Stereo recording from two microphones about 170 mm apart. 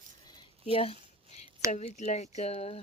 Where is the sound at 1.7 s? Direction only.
45° left (ahead or behind).